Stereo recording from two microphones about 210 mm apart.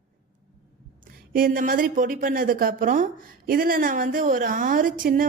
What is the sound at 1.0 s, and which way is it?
A woman's voice, 40° right (ahead or behind).